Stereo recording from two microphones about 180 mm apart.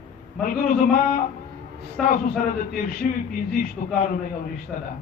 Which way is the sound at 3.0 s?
45° left (ahead or behind).